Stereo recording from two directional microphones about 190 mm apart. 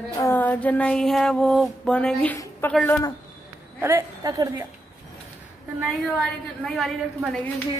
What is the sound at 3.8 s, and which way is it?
Speech, 15° right (ahead or behind).